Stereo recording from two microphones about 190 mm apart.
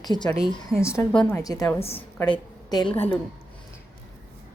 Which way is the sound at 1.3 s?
20° left (ahead or behind).